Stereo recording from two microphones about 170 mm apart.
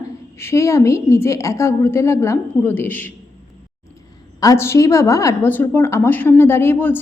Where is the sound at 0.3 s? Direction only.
15° left (ahead or behind).